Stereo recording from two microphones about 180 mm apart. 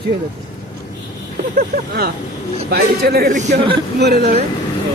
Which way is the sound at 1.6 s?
60° right (ahead or behind).